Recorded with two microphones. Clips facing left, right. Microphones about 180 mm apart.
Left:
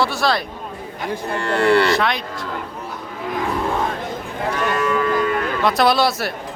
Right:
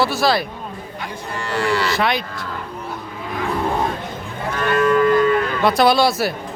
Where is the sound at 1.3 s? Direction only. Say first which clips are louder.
Left 5 dB; 60° left (ahead or behind).